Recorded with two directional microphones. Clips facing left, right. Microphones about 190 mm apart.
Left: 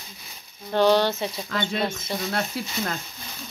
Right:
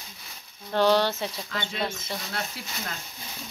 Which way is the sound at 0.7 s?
Centre (ahead or behind).